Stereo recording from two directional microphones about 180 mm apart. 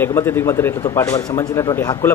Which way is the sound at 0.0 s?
15° left (ahead or behind).